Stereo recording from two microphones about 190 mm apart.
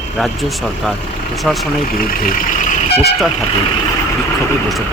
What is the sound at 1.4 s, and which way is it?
Speech, centre (ahead or behind).